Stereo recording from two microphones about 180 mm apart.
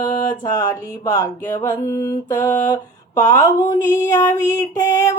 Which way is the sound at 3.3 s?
15° left (ahead or behind).